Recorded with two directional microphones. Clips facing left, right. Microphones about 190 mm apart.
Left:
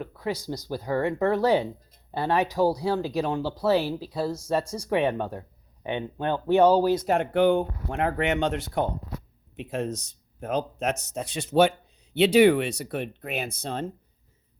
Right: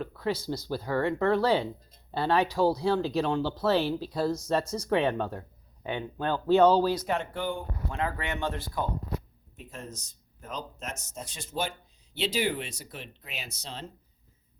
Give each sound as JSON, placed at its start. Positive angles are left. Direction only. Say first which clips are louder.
{"t": 0.0, "sound": "speech", "louder": "even", "side_deg": 15}
{"t": 7.0, "sound": "speech", "louder": "left 9 dB", "side_deg": 55}
{"t": 10.4, "sound": "speech", "louder": "left 12 dB", "side_deg": 60}